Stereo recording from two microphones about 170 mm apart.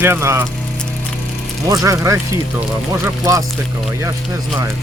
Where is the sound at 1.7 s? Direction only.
20° right (ahead or behind).